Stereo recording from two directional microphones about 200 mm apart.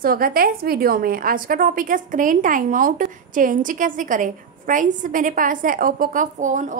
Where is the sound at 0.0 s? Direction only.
45° right (ahead or behind).